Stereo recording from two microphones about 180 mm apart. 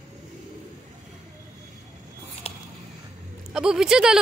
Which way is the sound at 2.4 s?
35° left (ahead or behind).